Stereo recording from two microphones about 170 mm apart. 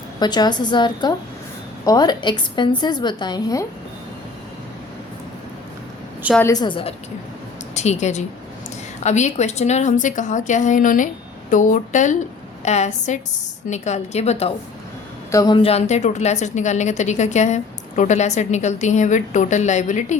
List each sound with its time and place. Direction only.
0.2 s a woman's voice: 25° left (ahead or behind)
6.4 s a woman's voice: 20° left (ahead or behind)
7.8 s a woman's voice: 40° left (ahead or behind)
15.3 s speech: 20° left (ahead or behind)
15.5 s a woman's voice: 35° left (ahead or behind)